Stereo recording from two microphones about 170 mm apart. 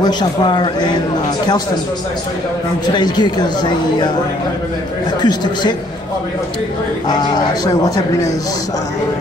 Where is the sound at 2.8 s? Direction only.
25° left (ahead or behind).